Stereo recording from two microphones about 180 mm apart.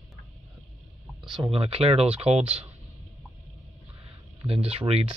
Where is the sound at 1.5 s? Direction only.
35° right (ahead or behind).